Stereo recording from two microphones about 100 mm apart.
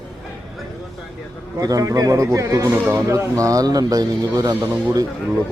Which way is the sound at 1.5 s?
35° right (ahead or behind).